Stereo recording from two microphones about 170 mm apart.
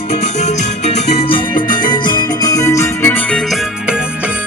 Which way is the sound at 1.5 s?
55° left (ahead or behind).